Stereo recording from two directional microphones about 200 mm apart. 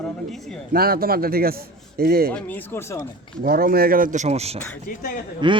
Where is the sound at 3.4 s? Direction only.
50° right (ahead or behind); by 4.6 s 30° right (ahead or behind).